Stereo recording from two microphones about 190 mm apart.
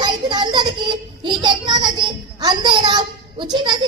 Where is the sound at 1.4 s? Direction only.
25° right (ahead or behind).